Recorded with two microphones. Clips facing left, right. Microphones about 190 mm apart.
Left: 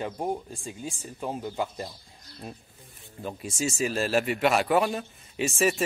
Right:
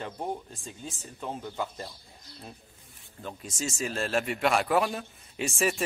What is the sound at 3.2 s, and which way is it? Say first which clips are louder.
A man's voice: left 5 dB; 10° left (ahead or behind).